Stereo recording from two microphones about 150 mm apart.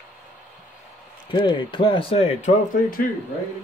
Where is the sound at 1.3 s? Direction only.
30° left (ahead or behind).